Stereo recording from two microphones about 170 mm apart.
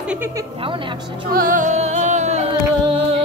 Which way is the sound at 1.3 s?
50° right (ahead or behind).